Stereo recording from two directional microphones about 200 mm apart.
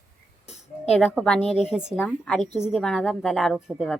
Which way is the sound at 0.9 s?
5° left (ahead or behind).